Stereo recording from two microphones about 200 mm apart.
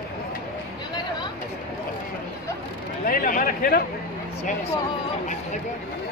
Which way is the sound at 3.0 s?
45° left (ahead or behind).